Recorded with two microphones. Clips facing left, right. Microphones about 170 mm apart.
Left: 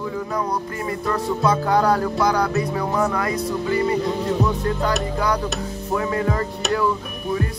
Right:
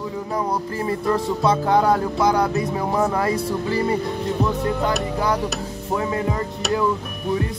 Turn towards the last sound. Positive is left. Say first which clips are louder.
# left 1 dB
turn(degrees=-25)  # may be behind; listen again after turning